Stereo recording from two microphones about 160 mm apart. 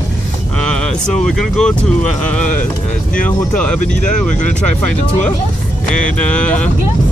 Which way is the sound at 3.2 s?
5° left (ahead or behind).